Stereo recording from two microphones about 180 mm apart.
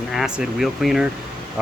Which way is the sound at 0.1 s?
Centre (ahead or behind).